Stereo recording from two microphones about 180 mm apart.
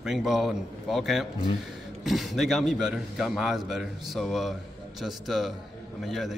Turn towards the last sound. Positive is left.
turn(degrees=0)  # may be behind; listen again after turning